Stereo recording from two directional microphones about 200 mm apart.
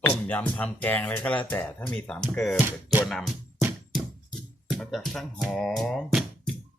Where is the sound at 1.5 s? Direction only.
10° left (ahead or behind).